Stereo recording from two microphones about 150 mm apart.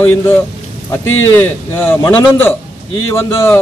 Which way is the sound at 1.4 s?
15° left (ahead or behind).